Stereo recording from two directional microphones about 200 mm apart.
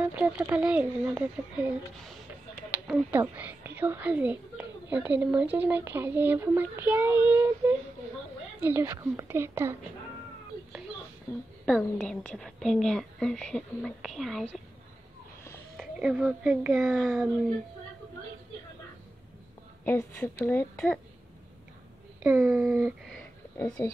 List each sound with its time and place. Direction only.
0.1 s a woman's voice: 10° right (ahead or behind)
11.6 s a woman's voice: 5° left (ahead or behind)
15.8 s a woman's voice: 5° right (ahead or behind)
19.8 s a woman's voice: 10° left (ahead or behind)
22.2 s speech: 5° right (ahead or behind)
23.6 s a woman's voice: 15° left (ahead or behind)